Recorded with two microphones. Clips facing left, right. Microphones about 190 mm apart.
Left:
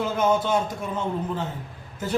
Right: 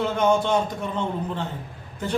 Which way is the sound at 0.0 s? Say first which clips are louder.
Right 1 dB; 5° left (ahead or behind).